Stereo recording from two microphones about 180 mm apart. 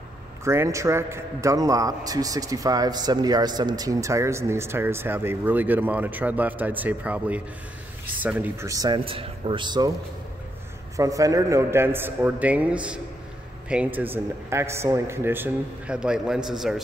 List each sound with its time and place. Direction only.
0.4 s a man's voice: 15° right (ahead or behind)
11.0 s a man's voice: 20° right (ahead or behind); by 16.8 s centre (ahead or behind)